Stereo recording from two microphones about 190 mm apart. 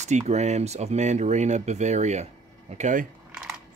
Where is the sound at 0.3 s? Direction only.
35° right (ahead or behind).